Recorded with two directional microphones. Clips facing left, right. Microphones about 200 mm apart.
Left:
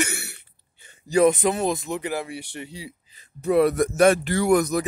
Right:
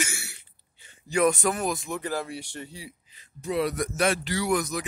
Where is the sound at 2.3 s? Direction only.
60° left (ahead or behind); by 2.9 s 80° left.